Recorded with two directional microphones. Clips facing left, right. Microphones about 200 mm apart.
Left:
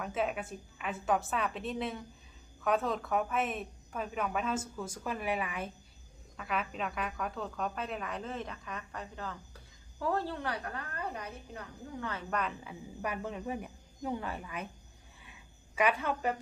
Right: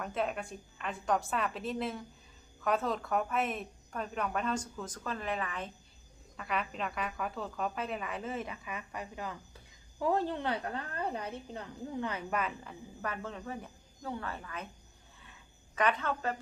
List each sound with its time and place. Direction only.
0.0 s a woman's voice: centre (ahead or behind); by 12.2 s 20° right (ahead or behind)
12.3 s a woman's voice: 5° right (ahead or behind)
13.0 s a woman's voice: 15° left (ahead or behind)
15.2 s a sound: 10° left (ahead or behind)